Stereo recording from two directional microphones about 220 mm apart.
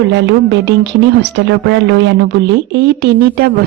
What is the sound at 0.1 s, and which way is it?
Speech, 55° right (ahead or behind).